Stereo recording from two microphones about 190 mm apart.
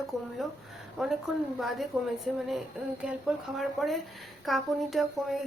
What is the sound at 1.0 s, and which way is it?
Speech, 5° right (ahead or behind).